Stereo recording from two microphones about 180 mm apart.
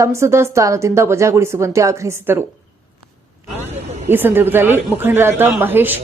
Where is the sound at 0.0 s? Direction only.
15° right (ahead or behind).